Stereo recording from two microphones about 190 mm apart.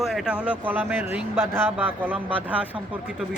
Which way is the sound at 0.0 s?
Centre (ahead or behind).